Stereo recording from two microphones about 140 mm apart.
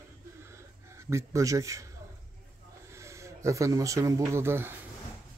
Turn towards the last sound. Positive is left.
turn(degrees=-15)  # may be behind; listen again after turning